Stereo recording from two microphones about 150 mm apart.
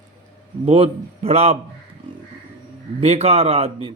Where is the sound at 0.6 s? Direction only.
40° right (ahead or behind).